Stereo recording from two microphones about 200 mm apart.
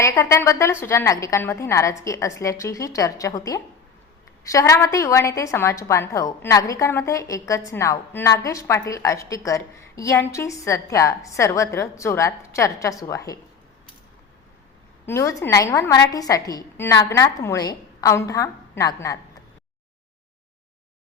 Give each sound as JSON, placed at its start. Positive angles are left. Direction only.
{"t": 0.0, "sound": "a woman's voice", "side_deg": 15}
{"t": 15.0, "sound": "a woman's voice", "side_deg": 15}